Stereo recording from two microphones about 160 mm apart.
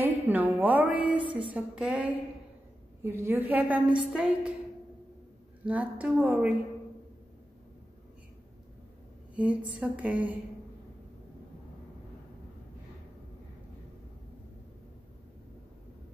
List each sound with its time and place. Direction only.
0.0 s a woman's voice: 10° right (ahead or behind)
5.7 s a woman's voice: 10° right (ahead or behind)
9.4 s a woman's voice: 10° right (ahead or behind)